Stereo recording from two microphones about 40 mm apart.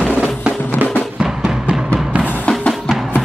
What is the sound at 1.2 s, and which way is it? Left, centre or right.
Music, right.